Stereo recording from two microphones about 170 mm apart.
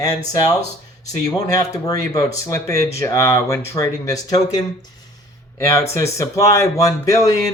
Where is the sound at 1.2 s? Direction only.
20° left (ahead or behind).